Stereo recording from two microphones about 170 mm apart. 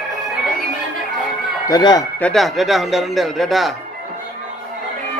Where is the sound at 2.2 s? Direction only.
5° left (ahead or behind).